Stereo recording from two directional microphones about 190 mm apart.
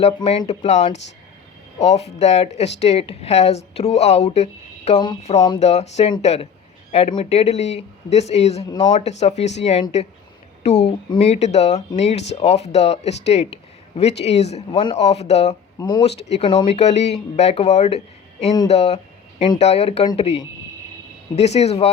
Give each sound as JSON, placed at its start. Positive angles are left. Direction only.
{"t": 0.0, "sound": "speech", "side_deg": 30}
{"t": 10.8, "sound": "speech", "side_deg": 30}
{"t": 15.8, "sound": "speech", "side_deg": 20}